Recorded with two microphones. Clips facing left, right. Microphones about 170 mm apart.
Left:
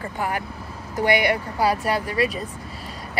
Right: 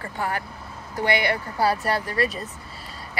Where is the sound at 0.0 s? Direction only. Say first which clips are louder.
Left 2 dB; 15° left (ahead or behind).